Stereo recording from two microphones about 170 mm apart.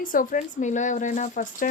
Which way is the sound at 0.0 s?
50° left (ahead or behind).